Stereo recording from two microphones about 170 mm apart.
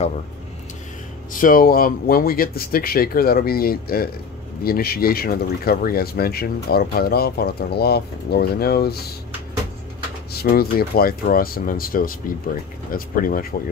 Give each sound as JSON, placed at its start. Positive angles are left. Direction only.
{"t": 1.3, "sound": "speech", "side_deg": 55}
{"t": 10.3, "sound": "speech", "side_deg": 65}